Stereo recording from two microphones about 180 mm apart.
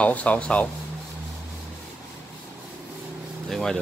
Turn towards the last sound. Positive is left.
turn(degrees=5)  # may be behind; listen again after turning